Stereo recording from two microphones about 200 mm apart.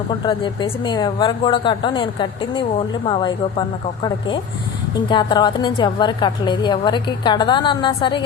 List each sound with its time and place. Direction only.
0.1 s a woman's voice: 25° left (ahead or behind)